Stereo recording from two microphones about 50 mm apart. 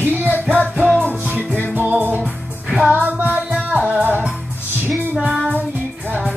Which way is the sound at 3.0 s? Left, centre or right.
Right.